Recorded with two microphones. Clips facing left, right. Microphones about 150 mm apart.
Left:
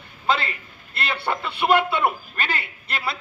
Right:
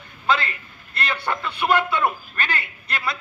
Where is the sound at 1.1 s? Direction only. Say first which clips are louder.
Left 1 dB; 30° left (ahead or behind).